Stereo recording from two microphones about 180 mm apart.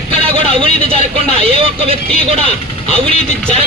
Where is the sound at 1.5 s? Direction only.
30° right (ahead or behind).